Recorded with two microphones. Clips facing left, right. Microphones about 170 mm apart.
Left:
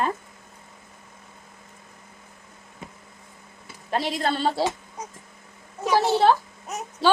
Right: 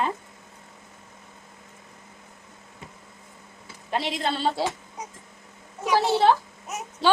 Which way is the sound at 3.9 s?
45° left (ahead or behind).